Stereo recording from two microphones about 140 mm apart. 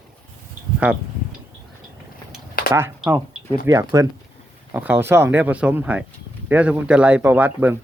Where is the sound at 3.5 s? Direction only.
25° right (ahead or behind).